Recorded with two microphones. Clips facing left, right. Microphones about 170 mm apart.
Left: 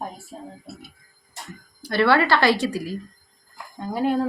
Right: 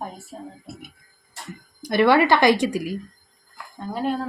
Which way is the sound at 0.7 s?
15° right (ahead or behind).